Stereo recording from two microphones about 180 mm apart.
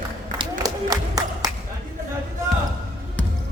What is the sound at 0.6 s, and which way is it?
Crowd, 20° right (ahead or behind).